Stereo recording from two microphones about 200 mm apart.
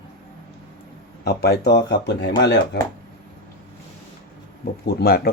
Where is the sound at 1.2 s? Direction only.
55° left (ahead or behind).